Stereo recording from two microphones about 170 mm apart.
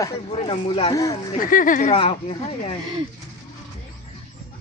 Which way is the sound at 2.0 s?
35° left (ahead or behind).